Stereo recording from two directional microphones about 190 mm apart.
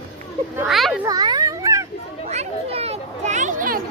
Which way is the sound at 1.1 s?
20° right (ahead or behind).